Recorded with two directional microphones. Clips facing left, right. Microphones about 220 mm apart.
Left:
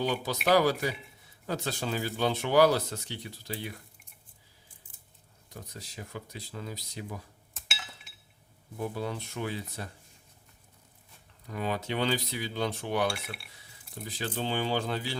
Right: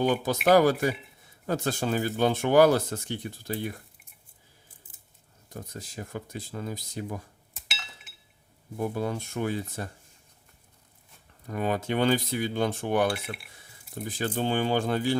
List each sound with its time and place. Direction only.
0.0 s cutlery: 50° right (ahead or behind)
5.5 s cutlery: 45° right (ahead or behind)
8.8 s cutlery: 50° right (ahead or behind)
11.4 s cutlery: 50° right (ahead or behind)